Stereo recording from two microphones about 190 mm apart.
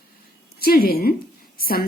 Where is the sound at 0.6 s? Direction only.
50° left (ahead or behind).